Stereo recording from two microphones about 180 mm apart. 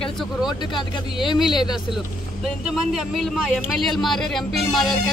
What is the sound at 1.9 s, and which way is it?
Speech, centre (ahead or behind).